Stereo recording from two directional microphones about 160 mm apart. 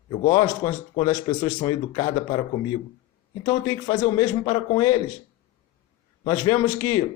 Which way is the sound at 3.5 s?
25° left (ahead or behind).